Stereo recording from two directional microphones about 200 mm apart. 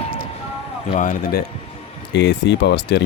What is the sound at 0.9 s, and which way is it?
Speech, 40° left (ahead or behind).